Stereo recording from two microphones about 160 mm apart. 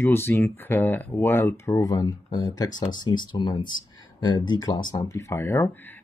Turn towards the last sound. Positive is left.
turn(degrees=10)  # may be behind; listen again after turning